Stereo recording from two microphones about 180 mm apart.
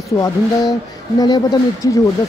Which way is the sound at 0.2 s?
20° left (ahead or behind).